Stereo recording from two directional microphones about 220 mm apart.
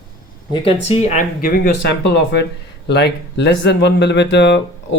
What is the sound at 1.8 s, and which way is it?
Speech, 50° left (ahead or behind).